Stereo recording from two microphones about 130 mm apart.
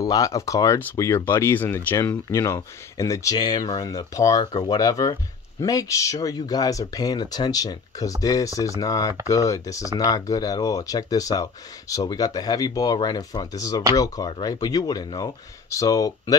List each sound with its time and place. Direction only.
0.0 s speech: 25° left (ahead or behind)